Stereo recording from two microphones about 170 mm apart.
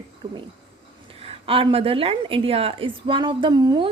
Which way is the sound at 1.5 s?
30° right (ahead or behind).